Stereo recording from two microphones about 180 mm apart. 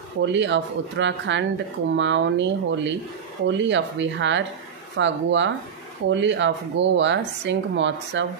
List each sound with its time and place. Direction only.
0.2 s speech: 85° right